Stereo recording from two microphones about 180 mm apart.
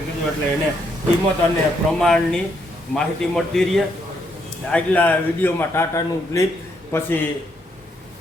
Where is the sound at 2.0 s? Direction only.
5° left (ahead or behind).